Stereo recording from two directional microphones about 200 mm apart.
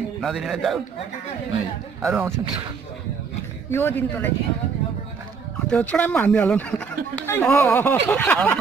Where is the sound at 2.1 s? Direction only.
5° right (ahead or behind).